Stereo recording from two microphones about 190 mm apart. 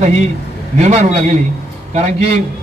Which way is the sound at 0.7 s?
35° right (ahead or behind).